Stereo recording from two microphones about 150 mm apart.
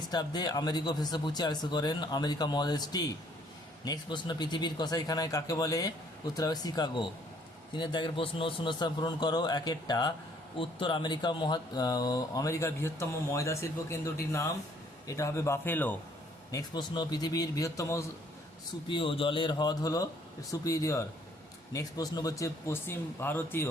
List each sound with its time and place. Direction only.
0.0 s a man's voice: 30° left (ahead or behind); by 16.0 s 10° left (ahead or behind)
16.5 s speech: 25° left (ahead or behind)
18.9 s a man's voice: 35° left (ahead or behind); by 23.6 s 15° left (ahead or behind)